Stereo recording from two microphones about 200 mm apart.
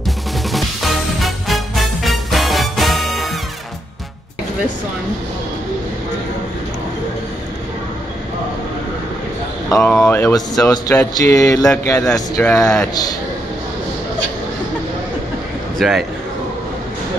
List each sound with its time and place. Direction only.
0.5 s music: centre (ahead or behind)
9.7 s speech: 10° left (ahead or behind)
15.8 s a sound: centre (ahead or behind)